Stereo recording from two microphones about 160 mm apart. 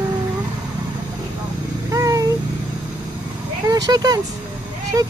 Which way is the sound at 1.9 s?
20° right (ahead or behind).